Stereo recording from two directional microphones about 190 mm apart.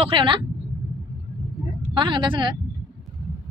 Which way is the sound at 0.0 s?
25° right (ahead or behind).